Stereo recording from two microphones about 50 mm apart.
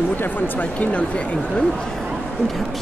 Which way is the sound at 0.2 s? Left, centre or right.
Left.